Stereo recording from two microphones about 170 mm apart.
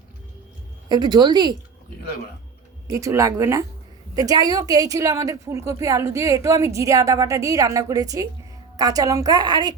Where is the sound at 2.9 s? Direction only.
20° right (ahead or behind).